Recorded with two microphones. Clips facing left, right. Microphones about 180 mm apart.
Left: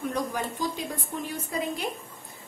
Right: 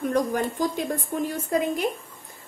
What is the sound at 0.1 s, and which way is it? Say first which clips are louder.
A woman's voice: right 6 dB; 50° right (ahead or behind).